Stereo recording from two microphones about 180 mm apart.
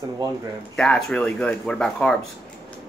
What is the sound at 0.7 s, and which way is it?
Speech, 5° left (ahead or behind).